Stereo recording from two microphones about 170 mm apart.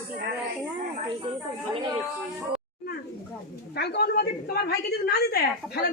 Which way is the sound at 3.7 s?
75° left (ahead or behind).